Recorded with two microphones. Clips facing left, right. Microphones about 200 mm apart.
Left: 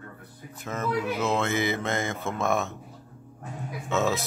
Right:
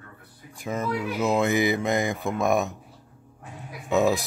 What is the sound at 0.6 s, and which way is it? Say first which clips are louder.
Speech: right 1 dB; 15° right (ahead or behind).